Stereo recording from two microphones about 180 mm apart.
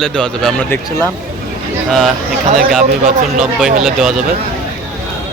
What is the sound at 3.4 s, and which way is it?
Speech, 5° right (ahead or behind).